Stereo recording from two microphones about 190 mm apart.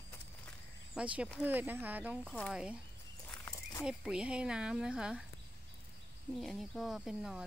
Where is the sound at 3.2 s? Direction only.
15° left (ahead or behind).